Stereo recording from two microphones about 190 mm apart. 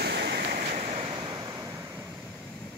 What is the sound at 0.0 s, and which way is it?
Waves, 60° right (ahead or behind).